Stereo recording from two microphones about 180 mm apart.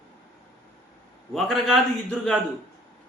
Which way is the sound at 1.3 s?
Centre (ahead or behind).